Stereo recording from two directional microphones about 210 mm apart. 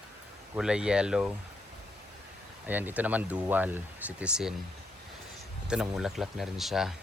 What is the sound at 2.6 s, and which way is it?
Speech, 10° right (ahead or behind).